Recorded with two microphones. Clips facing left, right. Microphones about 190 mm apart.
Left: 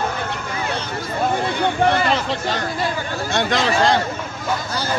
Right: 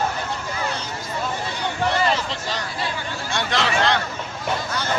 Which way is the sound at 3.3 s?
45° left (ahead or behind).